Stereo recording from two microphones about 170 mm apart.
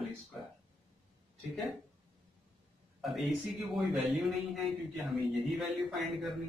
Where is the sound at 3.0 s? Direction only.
Centre (ahead or behind).